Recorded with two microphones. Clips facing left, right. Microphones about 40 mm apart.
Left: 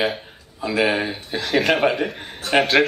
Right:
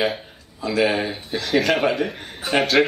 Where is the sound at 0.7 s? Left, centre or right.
Centre.